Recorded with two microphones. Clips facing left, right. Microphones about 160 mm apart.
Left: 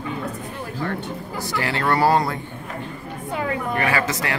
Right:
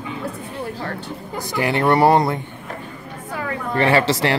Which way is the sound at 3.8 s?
30° right (ahead or behind).